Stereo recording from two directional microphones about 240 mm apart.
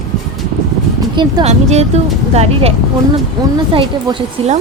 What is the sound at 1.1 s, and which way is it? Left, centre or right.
A woman's voice, right.